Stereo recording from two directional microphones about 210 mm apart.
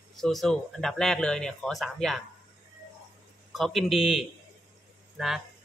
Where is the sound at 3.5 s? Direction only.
Centre (ahead or behind).